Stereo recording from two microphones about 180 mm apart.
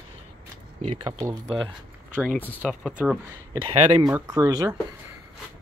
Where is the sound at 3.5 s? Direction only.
25° right (ahead or behind).